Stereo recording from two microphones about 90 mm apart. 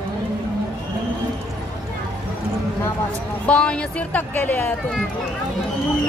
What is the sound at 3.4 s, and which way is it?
Speech, 10° left (ahead or behind).